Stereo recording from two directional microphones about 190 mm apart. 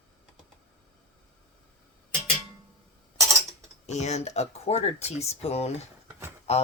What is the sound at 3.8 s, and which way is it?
Speech, 35° left (ahead or behind).